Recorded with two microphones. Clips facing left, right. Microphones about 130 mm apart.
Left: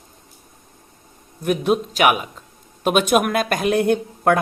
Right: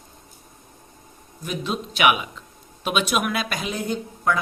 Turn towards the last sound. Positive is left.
turn(degrees=60)  # may be behind; listen again after turning